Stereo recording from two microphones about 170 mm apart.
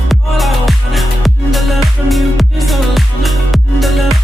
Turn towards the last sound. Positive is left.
turn(degrees=0)  # may be behind; listen again after turning